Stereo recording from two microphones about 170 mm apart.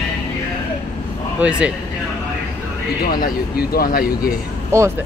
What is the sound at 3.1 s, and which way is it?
Speech, 55° left (ahead or behind).